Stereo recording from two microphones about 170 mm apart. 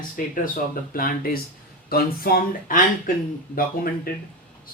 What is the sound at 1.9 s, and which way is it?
Speech, 60° left (ahead or behind).